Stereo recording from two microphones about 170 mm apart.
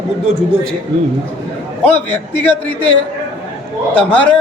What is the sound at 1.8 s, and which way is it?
A man's voice, 10° left (ahead or behind).